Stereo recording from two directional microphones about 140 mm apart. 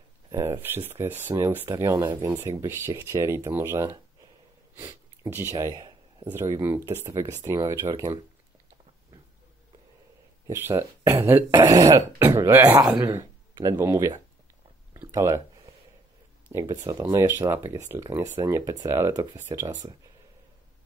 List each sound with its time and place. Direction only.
0.3 s speech: 20° right (ahead or behind)
4.7 s a sound: 20° right (ahead or behind)
6.3 s speech: 20° right (ahead or behind)
10.4 s speech: 20° right (ahead or behind)
16.5 s speech: 25° right (ahead or behind)